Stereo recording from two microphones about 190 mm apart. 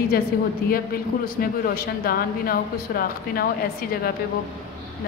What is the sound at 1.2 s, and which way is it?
A woman's voice, 50° left (ahead or behind).